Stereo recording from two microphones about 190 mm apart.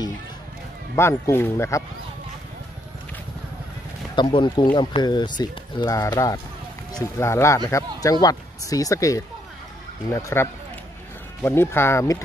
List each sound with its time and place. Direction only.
0.9 s speech: 15° left (ahead or behind)
4.1 s speech: 25° left (ahead or behind)